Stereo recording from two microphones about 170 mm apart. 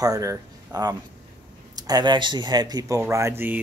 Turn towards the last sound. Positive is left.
turn(degrees=-10)  # may be behind; listen again after turning